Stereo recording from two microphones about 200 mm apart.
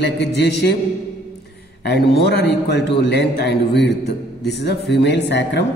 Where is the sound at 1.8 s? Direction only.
55° left (ahead or behind).